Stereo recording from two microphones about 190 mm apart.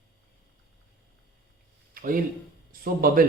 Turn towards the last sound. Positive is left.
turn(degrees=-50)  # may be behind; listen again after turning